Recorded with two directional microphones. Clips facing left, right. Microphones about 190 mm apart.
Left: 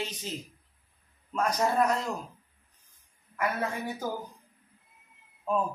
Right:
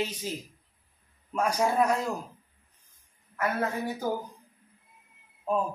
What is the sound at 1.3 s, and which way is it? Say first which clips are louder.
Speech: right 1 dB; 10° right (ahead or behind).